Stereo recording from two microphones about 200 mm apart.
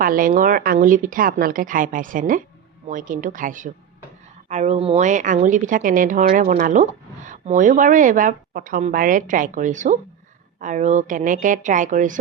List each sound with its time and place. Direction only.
0.0 s speech: 45° right (ahead or behind)